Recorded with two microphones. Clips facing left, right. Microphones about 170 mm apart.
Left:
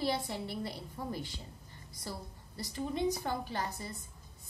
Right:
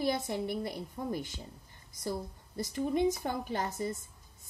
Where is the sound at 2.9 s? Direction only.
20° right (ahead or behind).